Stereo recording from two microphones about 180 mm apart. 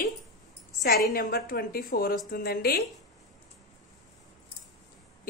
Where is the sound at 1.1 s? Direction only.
55° left (ahead or behind).